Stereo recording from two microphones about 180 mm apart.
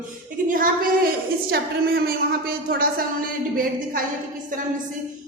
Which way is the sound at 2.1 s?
55° right (ahead or behind).